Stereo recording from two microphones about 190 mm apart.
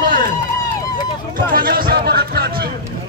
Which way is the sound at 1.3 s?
50° right (ahead or behind).